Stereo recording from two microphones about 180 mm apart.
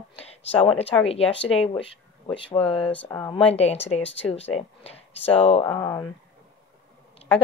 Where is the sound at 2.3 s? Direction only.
30° left (ahead or behind).